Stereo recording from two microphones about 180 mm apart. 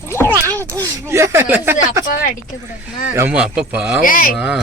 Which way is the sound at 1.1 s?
15° right (ahead or behind).